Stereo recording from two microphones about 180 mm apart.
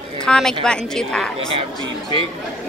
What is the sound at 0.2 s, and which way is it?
Speech, 5° left (ahead or behind).